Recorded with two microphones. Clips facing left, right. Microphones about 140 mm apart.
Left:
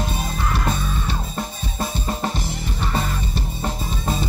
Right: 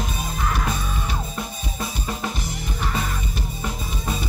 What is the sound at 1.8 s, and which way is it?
Drum kit, 35° left (ahead or behind).